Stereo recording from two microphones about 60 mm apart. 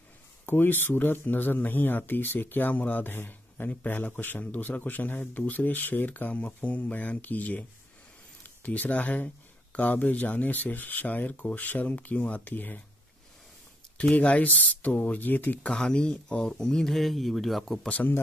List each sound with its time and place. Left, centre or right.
0.5 s a man's voice: left
8.6 s a man's voice: left
14.1 s a man's voice: left
15.7 s speech: centre
17.8 s a man's voice: left